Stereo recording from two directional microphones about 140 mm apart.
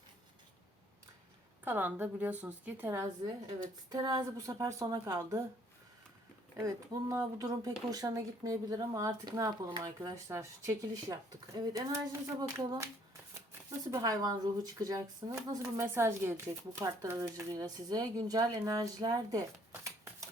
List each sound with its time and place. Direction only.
1.6 s a woman's voice: 15° right (ahead or behind)
3.8 s speech: 30° right (ahead or behind)
6.6 s speech: 25° right (ahead or behind)